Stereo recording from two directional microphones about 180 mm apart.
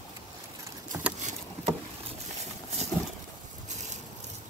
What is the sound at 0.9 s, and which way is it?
Boat, 15° right (ahead or behind).